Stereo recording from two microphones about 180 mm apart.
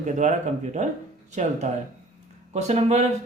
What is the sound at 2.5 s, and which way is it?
Speech, 40° right (ahead or behind).